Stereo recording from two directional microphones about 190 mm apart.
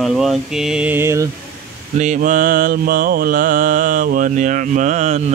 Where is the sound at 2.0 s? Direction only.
40° right (ahead or behind).